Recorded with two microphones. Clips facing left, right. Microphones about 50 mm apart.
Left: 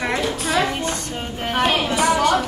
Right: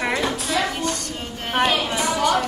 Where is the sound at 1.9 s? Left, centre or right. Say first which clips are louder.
Left 3 dB; left.